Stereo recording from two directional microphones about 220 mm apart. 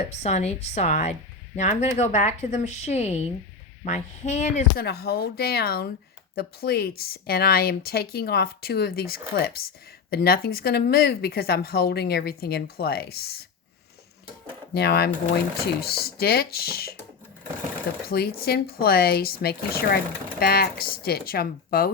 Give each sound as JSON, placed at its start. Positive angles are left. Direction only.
{"t": 0.2, "sound": "a woman's voice", "side_deg": 30}
{"t": 4.8, "sound": "speech", "side_deg": 45}
{"t": 14.7, "sound": "speech", "side_deg": 45}
{"t": 18.1, "sound": "speech", "side_deg": 45}